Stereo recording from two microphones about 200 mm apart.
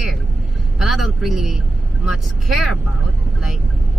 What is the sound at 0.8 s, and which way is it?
Speech, centre (ahead or behind).